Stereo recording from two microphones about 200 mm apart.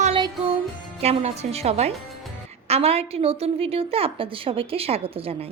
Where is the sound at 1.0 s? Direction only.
30° right (ahead or behind).